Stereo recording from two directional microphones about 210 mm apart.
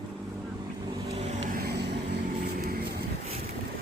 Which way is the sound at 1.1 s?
30° right (ahead or behind).